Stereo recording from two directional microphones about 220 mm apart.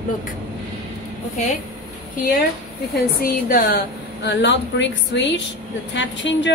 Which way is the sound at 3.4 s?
40° left (ahead or behind).